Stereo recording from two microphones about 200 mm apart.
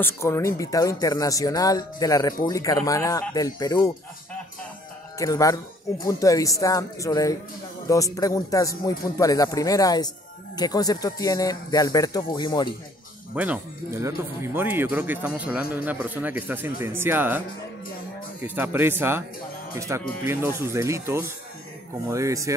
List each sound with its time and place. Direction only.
0.0 s speech: 15° left (ahead or behind)
5.2 s speech: 15° left (ahead or behind)
13.3 s speech: 5° right (ahead or behind)
18.4 s speech: 10° right (ahead or behind)